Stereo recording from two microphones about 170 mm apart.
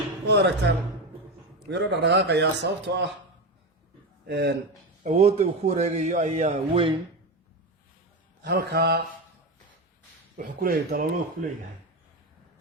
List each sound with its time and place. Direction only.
0.3 s speech: 90° right
1.7 s a man's voice: 85° right
4.3 s speech: 70° right (ahead or behind)
5.0 s a man's voice: 40° right (ahead or behind)
8.4 s speech: 70° right (ahead or behind)
10.3 s speech: 55° right (ahead or behind)